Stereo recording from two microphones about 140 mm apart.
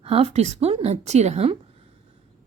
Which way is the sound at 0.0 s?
45° right (ahead or behind).